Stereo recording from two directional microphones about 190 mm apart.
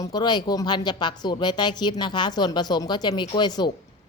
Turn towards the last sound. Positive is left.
turn(degrees=20)  # may be behind; listen again after turning